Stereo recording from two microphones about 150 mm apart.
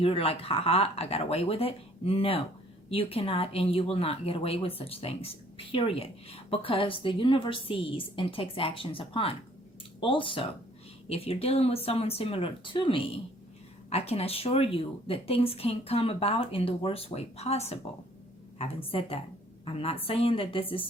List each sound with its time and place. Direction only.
0.0 s speech: 40° left (ahead or behind)
18.9 s speech: 40° left (ahead or behind)